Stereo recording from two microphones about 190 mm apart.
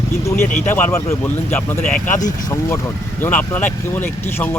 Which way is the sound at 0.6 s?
10° left (ahead or behind).